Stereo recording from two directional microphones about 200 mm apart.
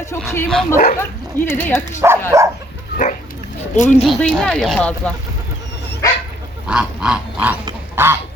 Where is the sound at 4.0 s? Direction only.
5° left (ahead or behind).